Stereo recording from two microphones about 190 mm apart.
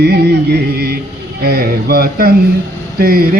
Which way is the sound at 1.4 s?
55° right (ahead or behind).